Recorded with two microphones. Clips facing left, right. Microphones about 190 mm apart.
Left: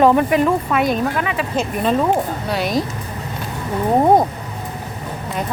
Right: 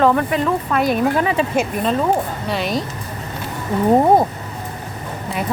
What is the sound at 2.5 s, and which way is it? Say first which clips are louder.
Speech: left 2 dB; centre (ahead or behind).